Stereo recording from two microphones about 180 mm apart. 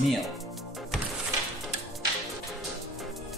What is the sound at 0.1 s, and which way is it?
Music, centre (ahead or behind).